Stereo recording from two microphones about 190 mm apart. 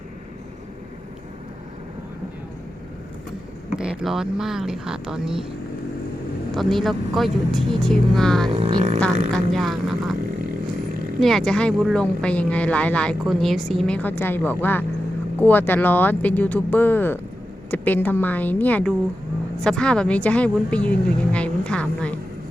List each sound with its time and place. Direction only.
3.8 s speech: 5° right (ahead or behind)
6.5 s speech: centre (ahead or behind)
8.5 s speech: 35° right (ahead or behind)
9.3 s speech: centre (ahead or behind)
11.2 s speech: centre (ahead or behind)